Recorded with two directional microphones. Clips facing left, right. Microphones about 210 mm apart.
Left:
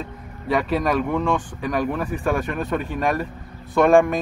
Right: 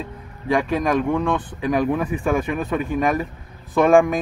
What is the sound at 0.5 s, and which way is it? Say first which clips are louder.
Speech: right 1 dB; centre (ahead or behind).